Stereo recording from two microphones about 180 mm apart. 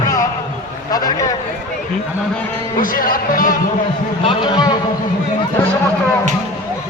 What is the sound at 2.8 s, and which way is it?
Speech, 50° left (ahead or behind).